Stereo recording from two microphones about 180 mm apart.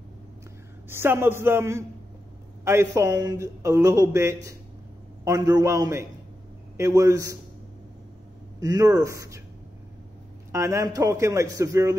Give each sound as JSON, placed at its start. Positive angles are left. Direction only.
{"t": 0.8, "sound": "speech", "side_deg": -15}
{"t": 8.5, "sound": "speech", "side_deg": -20}
{"t": 10.5, "sound": "speech", "side_deg": -15}